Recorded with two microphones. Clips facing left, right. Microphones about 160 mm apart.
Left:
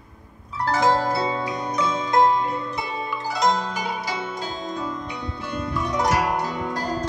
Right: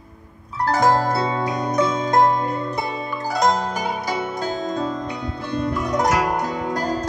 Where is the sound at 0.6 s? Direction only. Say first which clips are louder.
Right 2 dB; 45° right (ahead or behind).